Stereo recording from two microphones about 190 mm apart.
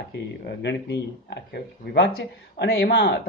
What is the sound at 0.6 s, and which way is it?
Speech, 65° left (ahead or behind).